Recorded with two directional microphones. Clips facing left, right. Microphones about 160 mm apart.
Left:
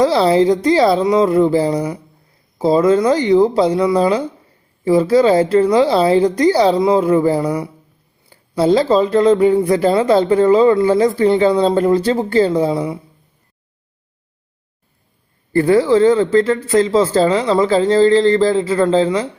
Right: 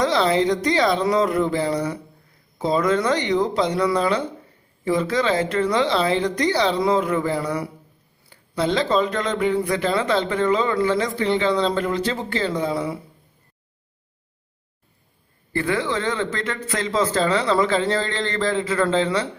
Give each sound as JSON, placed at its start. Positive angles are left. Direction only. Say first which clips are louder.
{"t": 0.0, "sound": "speech", "louder": "left 7 dB", "side_deg": 30}
{"t": 8.3, "sound": "speech", "louder": "left 9 dB", "side_deg": 35}
{"t": 15.5, "sound": "speech", "louder": "left 11 dB", "side_deg": 35}